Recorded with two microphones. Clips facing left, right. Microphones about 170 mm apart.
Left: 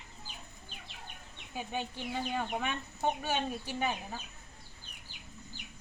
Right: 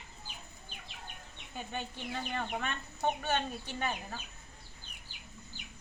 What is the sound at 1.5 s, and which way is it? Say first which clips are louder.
Speech: left 3 dB; 5° left (ahead or behind).